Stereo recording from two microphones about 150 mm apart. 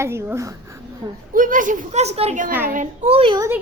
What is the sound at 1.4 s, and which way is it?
A child's voice, 65° right (ahead or behind).